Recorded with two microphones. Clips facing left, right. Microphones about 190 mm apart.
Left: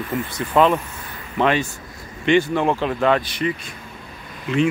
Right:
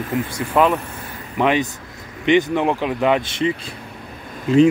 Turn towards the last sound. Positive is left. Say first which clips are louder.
# right 7 dB
turn(degrees=-35)  # may be behind; listen again after turning